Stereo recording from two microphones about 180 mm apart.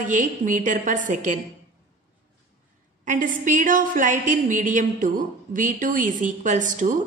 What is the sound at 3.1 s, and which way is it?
A woman's voice, 45° right (ahead or behind).